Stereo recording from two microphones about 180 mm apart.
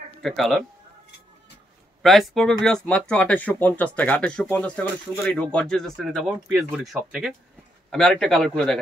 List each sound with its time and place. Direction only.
0.2 s speech: centre (ahead or behind)
2.0 s speech: centre (ahead or behind)